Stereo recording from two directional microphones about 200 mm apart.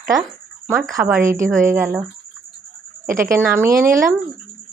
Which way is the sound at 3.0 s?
45° right (ahead or behind).